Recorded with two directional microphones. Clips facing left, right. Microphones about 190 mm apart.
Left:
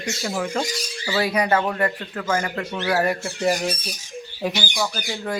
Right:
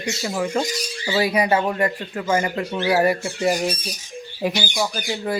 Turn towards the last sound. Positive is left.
turn(degrees=-10)  # may be behind; listen again after turning